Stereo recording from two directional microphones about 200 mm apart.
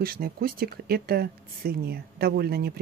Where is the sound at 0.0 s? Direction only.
50° right (ahead or behind).